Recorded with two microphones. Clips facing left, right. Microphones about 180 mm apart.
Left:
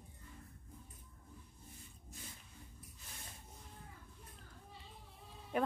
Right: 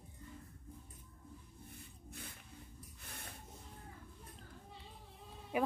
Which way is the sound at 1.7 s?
60° right (ahead or behind).